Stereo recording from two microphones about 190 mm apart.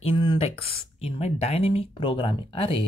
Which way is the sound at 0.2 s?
25° left (ahead or behind).